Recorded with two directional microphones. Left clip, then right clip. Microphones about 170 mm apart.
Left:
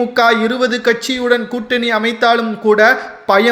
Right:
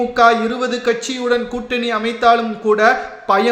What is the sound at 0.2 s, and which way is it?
A man's voice, 35° left (ahead or behind).